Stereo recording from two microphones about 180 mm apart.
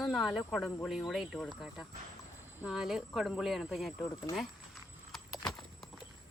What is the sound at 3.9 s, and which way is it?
Speech, 20° left (ahead or behind).